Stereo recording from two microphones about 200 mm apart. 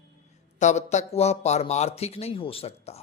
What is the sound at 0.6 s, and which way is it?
Speech, 35° left (ahead or behind).